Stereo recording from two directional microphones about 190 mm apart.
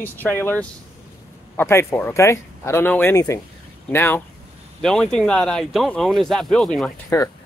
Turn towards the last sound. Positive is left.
turn(degrees=15)  # may be behind; listen again after turning